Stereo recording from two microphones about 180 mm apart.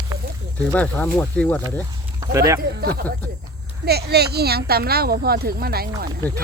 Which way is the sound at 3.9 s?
65° right (ahead or behind).